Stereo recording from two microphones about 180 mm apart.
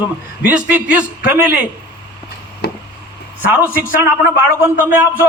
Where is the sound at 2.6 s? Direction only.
65° left (ahead or behind).